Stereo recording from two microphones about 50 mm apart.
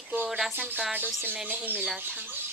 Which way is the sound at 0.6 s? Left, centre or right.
Right.